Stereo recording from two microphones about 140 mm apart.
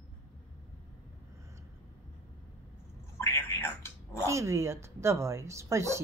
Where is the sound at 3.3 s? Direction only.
20° left (ahead or behind).